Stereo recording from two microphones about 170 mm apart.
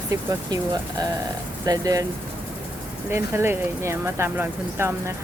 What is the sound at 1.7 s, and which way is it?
Speech, 20° right (ahead or behind).